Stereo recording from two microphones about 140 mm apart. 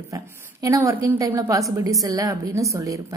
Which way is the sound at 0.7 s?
20° right (ahead or behind).